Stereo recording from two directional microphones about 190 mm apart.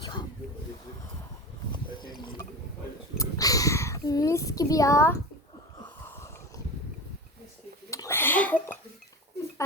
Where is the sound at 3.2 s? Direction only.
20° left (ahead or behind).